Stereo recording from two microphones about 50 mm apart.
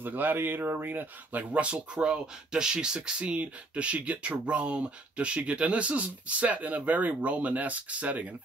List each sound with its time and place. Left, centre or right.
0.0 s speech: right